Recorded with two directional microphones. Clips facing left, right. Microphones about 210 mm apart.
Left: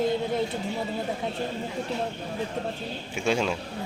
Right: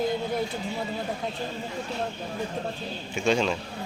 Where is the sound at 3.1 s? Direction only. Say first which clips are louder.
Right 1 dB; 10° left (ahead or behind).